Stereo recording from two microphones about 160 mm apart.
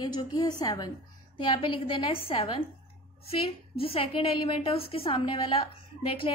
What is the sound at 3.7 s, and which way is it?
A woman's voice, 35° left (ahead or behind).